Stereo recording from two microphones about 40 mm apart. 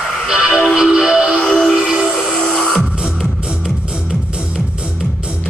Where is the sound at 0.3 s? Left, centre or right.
Centre.